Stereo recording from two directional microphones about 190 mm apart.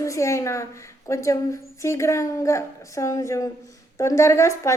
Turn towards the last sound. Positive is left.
turn(degrees=15)  # may be behind; listen again after turning